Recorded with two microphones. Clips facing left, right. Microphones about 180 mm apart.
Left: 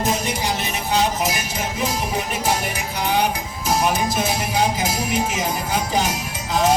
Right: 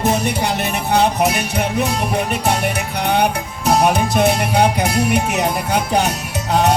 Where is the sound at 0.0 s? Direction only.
65° right (ahead or behind).